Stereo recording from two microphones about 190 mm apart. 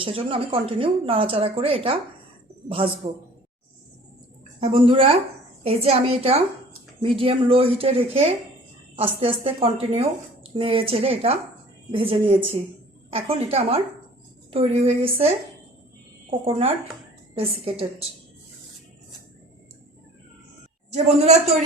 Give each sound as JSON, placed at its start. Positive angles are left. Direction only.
{"t": 0.0, "sound": "a woman's voice", "side_deg": -30}
{"t": 4.6, "sound": "a woman's voice", "side_deg": -30}
{"t": 16.5, "sound": "a woman's voice", "side_deg": -30}
{"t": 20.9, "sound": "a woman's voice", "side_deg": -35}